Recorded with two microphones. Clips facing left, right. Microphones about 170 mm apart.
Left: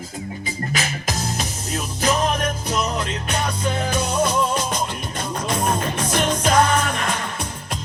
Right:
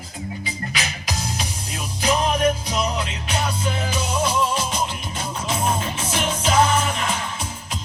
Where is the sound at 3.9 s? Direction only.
55° left (ahead or behind).